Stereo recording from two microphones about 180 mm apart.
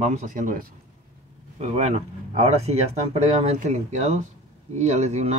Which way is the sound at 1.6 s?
35° right (ahead or behind).